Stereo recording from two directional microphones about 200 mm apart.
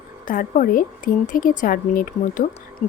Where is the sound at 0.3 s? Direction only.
45° left (ahead or behind).